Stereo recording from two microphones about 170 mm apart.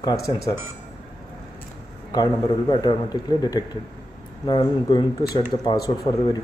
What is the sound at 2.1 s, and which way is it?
A man's voice, 25° left (ahead or behind).